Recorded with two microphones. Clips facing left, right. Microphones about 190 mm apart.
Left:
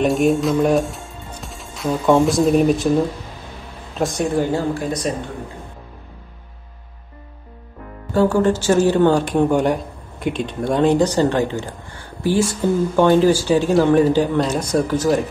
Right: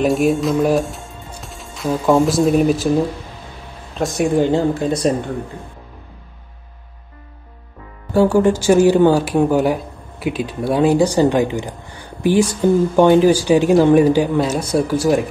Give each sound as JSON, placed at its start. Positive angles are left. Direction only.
{"t": 0.0, "sound": "speech", "side_deg": 0}
{"t": 4.2, "sound": "speech", "side_deg": -20}
{"t": 8.1, "sound": "speech", "side_deg": -10}